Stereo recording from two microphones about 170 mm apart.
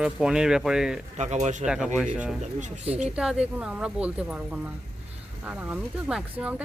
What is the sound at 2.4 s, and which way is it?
Speech, 45° right (ahead or behind).